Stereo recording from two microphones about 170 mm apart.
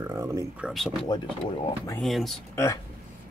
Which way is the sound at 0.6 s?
Centre (ahead or behind).